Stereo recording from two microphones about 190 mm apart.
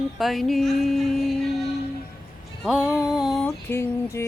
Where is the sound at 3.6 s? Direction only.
15° left (ahead or behind).